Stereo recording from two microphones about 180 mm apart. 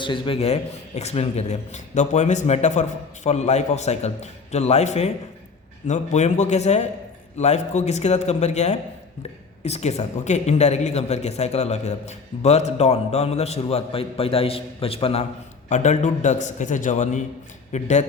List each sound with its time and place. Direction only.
0.0 s a man's voice: 30° left (ahead or behind)